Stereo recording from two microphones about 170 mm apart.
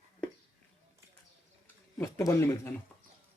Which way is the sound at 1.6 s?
15° left (ahead or behind).